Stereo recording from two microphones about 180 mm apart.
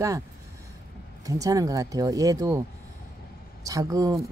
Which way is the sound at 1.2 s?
20° right (ahead or behind).